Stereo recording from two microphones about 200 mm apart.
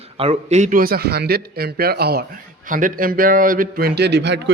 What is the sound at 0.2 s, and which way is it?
Chopping, 35° right (ahead or behind).